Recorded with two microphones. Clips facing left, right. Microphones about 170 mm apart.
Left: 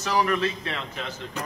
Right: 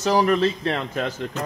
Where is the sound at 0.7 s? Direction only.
50° right (ahead or behind).